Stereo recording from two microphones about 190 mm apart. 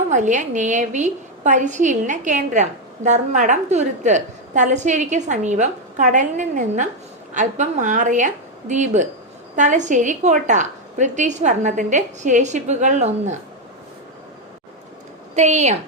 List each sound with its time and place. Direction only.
0.1 s a woman's voice: 40° right (ahead or behind)
15.4 s a woman's voice: 35° right (ahead or behind)